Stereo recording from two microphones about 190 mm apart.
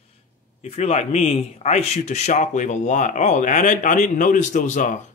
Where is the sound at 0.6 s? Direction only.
35° left (ahead or behind).